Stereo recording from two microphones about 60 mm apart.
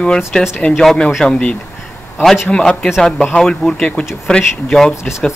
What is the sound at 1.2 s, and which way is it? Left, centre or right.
Speech, centre.